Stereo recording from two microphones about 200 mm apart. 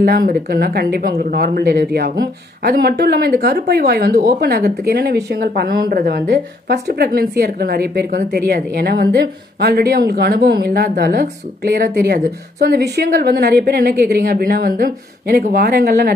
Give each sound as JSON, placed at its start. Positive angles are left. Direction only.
{"t": 0.0, "sound": "a woman's voice", "side_deg": -50}